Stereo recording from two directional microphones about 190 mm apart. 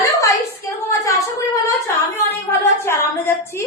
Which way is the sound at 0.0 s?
15° left (ahead or behind).